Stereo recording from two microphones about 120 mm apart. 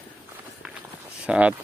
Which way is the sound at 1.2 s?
10° right (ahead or behind).